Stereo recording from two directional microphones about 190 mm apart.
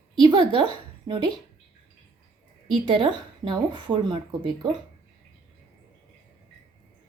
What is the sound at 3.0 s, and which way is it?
Speech, 25° right (ahead or behind).